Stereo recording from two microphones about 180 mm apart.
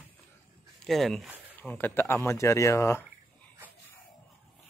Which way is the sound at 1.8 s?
10° left (ahead or behind).